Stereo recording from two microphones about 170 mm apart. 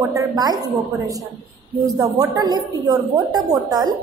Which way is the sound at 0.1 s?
20° right (ahead or behind).